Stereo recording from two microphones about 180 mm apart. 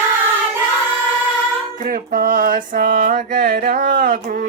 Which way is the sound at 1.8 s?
50° right (ahead or behind).